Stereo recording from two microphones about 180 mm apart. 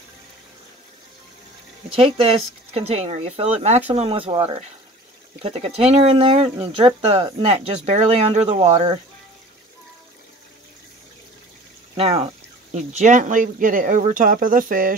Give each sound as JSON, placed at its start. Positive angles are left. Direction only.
{"t": 2.0, "sound": "speech", "side_deg": -35}
{"t": 12.0, "sound": "speech", "side_deg": -30}